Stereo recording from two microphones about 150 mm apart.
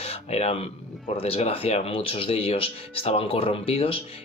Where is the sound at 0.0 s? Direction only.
45° left (ahead or behind).